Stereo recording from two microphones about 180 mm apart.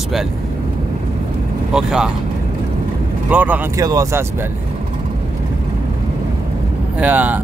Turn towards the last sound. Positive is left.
turn(degrees=-10)  # may be behind; listen again after turning